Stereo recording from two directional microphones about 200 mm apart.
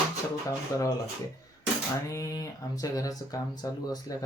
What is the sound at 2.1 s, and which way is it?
Speech, 15° left (ahead or behind).